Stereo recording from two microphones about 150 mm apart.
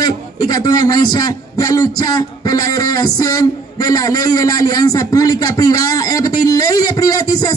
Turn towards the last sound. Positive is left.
turn(degrees=25)  # may be behind; listen again after turning